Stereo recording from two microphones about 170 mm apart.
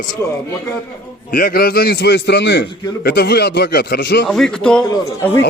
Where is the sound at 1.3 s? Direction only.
55° left (ahead or behind); by 2.6 s 90° left.